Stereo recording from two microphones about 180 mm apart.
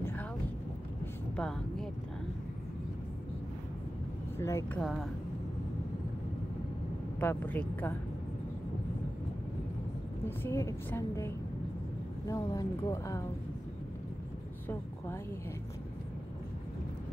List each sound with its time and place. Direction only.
1.3 s vehicle: 5° left (ahead or behind)
4.4 s a woman's voice: 15° left (ahead or behind)
7.2 s a woman's voice: 10° left (ahead or behind)
10.2 s a woman's voice: 15° left (ahead or behind)